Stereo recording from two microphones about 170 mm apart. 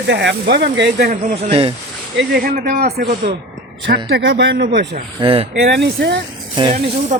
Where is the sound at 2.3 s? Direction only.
60° right (ahead or behind).